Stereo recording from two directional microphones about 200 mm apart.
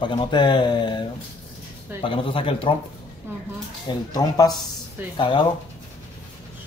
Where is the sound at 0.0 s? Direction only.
25° left (ahead or behind).